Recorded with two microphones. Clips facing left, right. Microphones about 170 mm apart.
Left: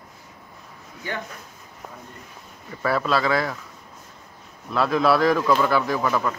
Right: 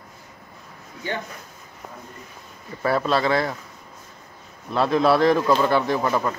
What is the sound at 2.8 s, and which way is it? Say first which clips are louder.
Speech: right 1 dB; 25° right (ahead or behind).